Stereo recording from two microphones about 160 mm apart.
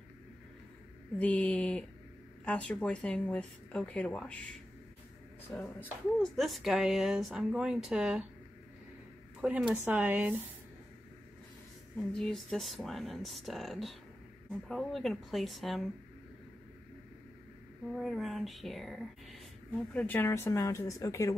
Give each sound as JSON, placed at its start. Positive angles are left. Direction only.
{"t": 1.1, "sound": "speech", "side_deg": 10}
{"t": 5.5, "sound": "speech", "side_deg": 5}
{"t": 9.4, "sound": "speech", "side_deg": -5}
{"t": 12.1, "sound": "speech", "side_deg": 5}
{"t": 17.9, "sound": "speech", "side_deg": 0}